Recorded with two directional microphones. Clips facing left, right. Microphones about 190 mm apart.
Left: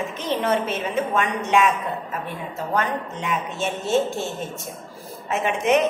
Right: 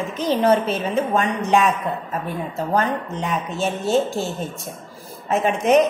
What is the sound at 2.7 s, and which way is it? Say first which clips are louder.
A woman's voice: right 3 dB; 35° right (ahead or behind).